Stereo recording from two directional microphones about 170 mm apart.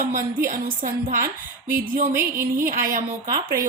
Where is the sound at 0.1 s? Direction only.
55° right (ahead or behind).